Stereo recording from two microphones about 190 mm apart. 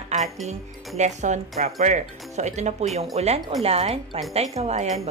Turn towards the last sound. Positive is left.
turn(degrees=-35)  # may be behind; listen again after turning